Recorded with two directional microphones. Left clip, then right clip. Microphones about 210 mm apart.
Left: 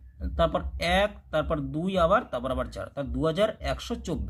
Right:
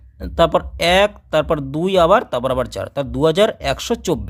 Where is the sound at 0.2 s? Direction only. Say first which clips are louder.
Right 11 dB; 50° right (ahead or behind).